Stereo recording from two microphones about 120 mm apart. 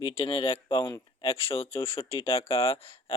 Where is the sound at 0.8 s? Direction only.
40° left (ahead or behind).